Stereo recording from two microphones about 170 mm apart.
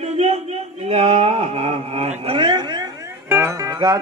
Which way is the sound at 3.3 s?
15° right (ahead or behind).